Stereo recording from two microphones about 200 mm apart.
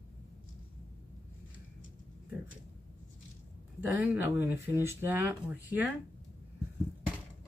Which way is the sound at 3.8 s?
10° right (ahead or behind).